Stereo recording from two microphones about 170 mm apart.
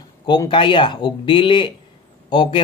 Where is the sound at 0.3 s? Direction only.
30° left (ahead or behind).